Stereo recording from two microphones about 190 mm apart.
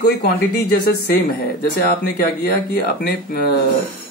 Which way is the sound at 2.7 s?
55° left (ahead or behind).